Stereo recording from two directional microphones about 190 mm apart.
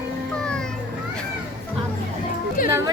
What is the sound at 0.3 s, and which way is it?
Children playing, 5° left (ahead or behind).